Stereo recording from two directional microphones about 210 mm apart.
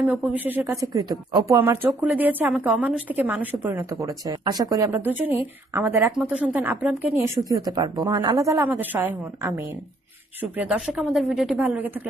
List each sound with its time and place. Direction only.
0.0 s speech: 5° right (ahead or behind)